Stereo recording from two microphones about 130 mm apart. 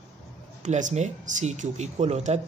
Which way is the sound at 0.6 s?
65° right (ahead or behind).